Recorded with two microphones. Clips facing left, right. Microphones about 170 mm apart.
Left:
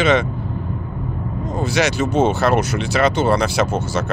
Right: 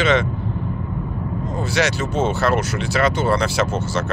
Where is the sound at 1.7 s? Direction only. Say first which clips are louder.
Left 3 dB; 15° left (ahead or behind).